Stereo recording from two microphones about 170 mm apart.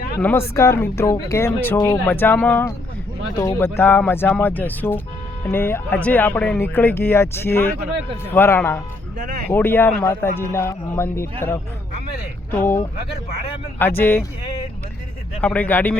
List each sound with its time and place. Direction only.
0.2 s speech: 10° left (ahead or behind)
15.4 s speech: 10° left (ahead or behind)